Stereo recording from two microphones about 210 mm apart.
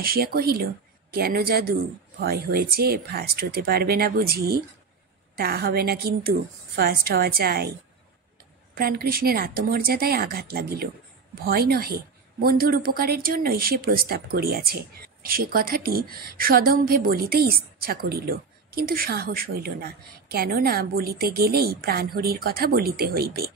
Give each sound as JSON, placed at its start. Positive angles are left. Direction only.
{"t": 0.0, "sound": "a woman's voice", "side_deg": -45}
{"t": 8.7, "sound": "a woman's voice", "side_deg": -45}